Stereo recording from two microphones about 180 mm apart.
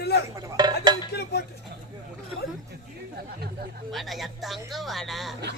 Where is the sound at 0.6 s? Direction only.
25° right (ahead or behind).